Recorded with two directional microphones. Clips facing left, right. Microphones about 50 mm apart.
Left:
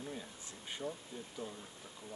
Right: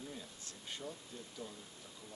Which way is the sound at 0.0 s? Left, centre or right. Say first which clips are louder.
Left 3 dB; left.